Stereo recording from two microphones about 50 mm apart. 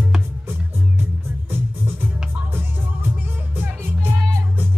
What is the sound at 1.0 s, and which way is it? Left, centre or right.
Music, right.